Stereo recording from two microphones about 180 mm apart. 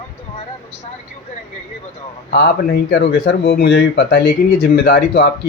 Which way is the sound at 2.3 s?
65° left (ahead or behind).